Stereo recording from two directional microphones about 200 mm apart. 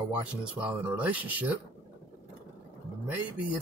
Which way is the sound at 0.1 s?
5° right (ahead or behind).